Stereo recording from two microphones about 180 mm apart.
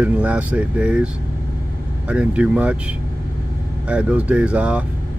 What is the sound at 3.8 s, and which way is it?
Speech, 5° right (ahead or behind).